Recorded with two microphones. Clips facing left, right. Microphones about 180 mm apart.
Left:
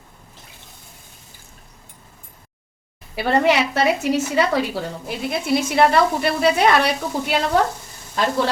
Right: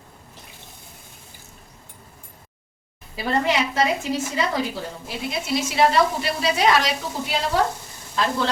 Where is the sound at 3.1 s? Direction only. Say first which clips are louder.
Left 5 dB; 75° left (ahead or behind).